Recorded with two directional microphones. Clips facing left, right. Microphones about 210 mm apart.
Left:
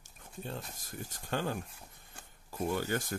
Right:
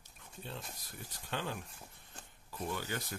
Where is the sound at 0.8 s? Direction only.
45° left (ahead or behind).